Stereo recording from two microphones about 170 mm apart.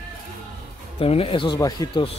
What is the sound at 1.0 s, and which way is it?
Speech, 35° left (ahead or behind).